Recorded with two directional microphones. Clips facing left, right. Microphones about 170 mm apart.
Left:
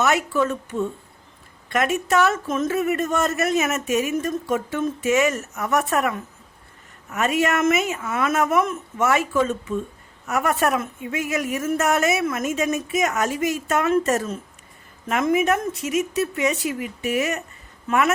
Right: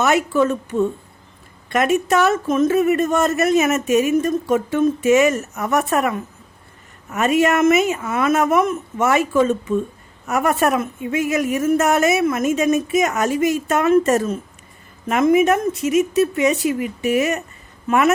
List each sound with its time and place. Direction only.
0.0 s speech: 20° right (ahead or behind)
7.2 s speech: 20° right (ahead or behind)